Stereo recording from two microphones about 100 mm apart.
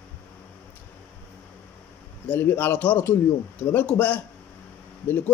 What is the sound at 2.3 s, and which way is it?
A man's voice, 20° left (ahead or behind).